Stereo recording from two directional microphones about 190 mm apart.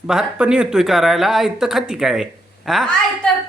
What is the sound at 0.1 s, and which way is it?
Speech, 5° right (ahead or behind).